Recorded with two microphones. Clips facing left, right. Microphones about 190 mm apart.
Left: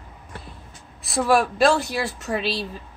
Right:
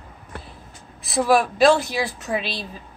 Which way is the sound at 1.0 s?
Centre (ahead or behind).